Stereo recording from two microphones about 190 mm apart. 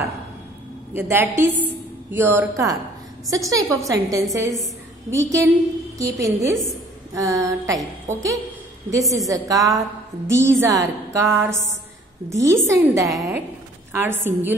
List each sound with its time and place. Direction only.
0.9 s a woman's voice: 10° right (ahead or behind)